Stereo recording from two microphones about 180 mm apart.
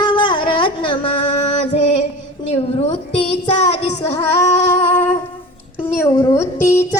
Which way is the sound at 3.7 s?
35° left (ahead or behind).